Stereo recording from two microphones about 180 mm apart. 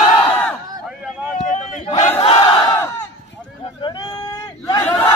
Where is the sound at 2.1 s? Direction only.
30° left (ahead or behind).